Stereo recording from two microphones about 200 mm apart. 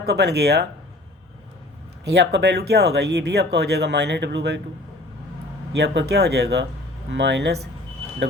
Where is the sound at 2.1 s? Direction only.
55° right (ahead or behind).